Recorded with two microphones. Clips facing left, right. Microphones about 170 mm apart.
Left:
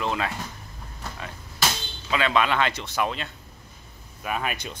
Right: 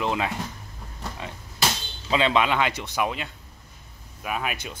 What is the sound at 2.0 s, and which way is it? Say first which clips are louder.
Speech: right 1 dB; 25° right (ahead or behind).